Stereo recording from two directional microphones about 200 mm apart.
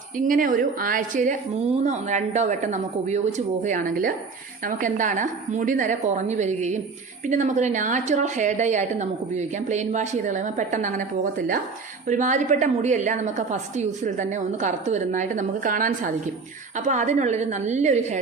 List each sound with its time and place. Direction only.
0.2 s a woman's voice: 40° right (ahead or behind)